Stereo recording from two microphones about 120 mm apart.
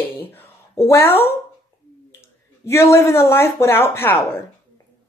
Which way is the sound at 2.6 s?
20° left (ahead or behind).